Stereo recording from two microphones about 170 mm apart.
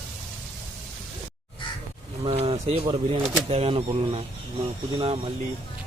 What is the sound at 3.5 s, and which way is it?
Speech, 35° right (ahead or behind).